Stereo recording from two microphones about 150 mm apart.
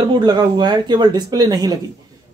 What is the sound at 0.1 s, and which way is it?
Speech, 30° right (ahead or behind).